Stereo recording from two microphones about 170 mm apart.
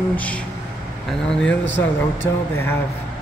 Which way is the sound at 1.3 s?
5° left (ahead or behind).